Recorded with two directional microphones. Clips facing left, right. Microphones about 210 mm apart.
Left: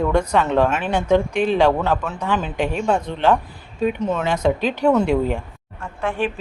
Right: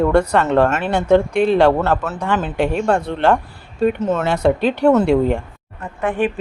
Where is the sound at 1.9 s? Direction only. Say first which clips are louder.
Right 2 dB; 5° right (ahead or behind).